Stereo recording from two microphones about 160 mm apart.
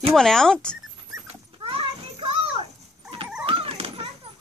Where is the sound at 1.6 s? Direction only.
35° right (ahead or behind).